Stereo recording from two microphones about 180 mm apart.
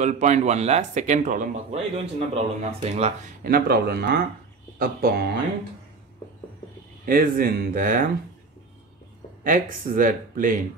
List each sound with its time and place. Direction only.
0.0 s speech: 40° right (ahead or behind)
3.4 s speech: 55° right (ahead or behind)
7.1 s speech: 50° right (ahead or behind)
9.4 s speech: 50° right (ahead or behind)